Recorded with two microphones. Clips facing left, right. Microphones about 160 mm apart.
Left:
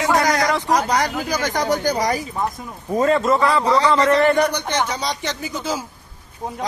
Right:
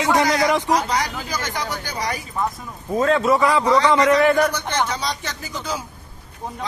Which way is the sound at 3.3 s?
15° right (ahead or behind).